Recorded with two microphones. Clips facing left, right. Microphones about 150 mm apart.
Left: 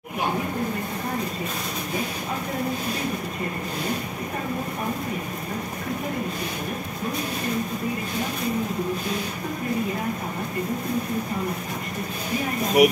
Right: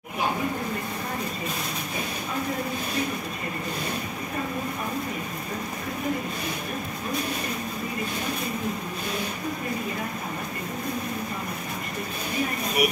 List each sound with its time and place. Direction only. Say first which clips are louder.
12.8 s speech: left 8 dB; 90° left